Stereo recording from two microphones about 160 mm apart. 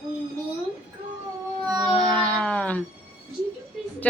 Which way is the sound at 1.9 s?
5° left (ahead or behind).